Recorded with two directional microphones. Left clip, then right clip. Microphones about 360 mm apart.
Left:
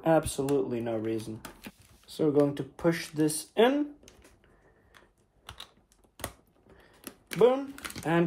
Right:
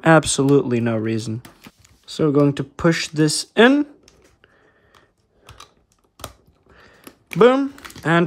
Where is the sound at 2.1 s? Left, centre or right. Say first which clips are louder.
Right 8 dB; right.